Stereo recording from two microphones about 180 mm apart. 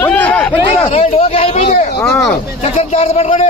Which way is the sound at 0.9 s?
35° left (ahead or behind).